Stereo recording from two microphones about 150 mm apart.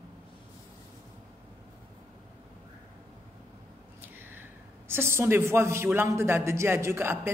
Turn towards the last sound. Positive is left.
turn(degrees=-15)  # may be behind; listen again after turning